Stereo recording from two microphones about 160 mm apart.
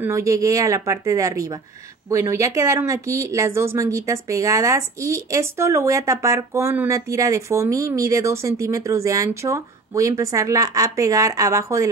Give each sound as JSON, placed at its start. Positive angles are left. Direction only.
{"t": 0.0, "sound": "speech", "side_deg": -20}